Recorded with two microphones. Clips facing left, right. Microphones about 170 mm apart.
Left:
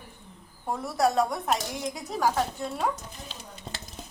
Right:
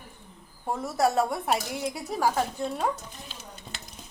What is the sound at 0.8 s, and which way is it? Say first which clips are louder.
Speech: even; centre (ahead or behind).